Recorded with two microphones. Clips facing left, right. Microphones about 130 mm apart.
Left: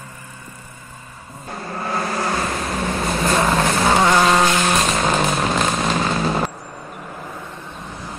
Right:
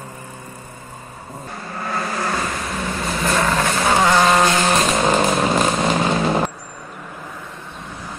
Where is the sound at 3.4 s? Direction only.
20° left (ahead or behind).